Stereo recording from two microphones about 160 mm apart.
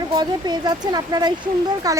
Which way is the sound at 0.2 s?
25° right (ahead or behind).